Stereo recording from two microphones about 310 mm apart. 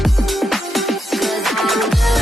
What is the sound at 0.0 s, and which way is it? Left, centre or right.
Music, centre.